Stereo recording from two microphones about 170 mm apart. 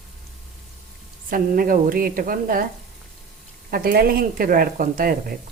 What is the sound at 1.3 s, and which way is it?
Speech, 55° right (ahead or behind).